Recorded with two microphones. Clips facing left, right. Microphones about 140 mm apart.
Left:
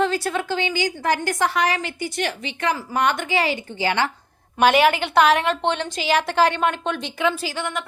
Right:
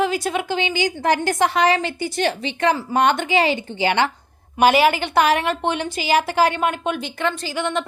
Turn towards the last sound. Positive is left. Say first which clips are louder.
# right 5 dB
turn(degrees=-25)  # may be behind; listen again after turning